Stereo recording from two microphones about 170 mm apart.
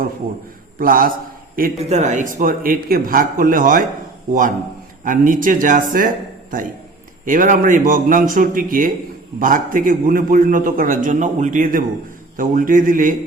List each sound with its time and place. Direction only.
0.8 s speech: 55° right (ahead or behind)
1.8 s a man's voice: 40° right (ahead or behind)